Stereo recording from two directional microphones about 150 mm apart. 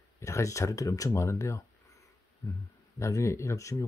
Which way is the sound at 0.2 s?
20° left (ahead or behind).